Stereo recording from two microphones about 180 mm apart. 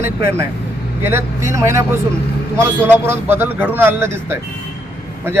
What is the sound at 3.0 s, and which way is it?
Speech, 10° right (ahead or behind).